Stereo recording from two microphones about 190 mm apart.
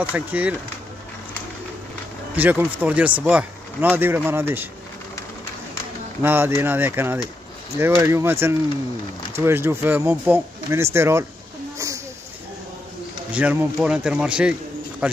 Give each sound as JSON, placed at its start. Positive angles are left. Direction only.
{"t": 0.1, "sound": "speech", "side_deg": -10}
{"t": 2.3, "sound": "speech", "side_deg": -10}
{"t": 6.2, "sound": "speech", "side_deg": -10}
{"t": 11.8, "sound": "a sound", "side_deg": -15}
{"t": 13.3, "sound": "speech", "side_deg": -10}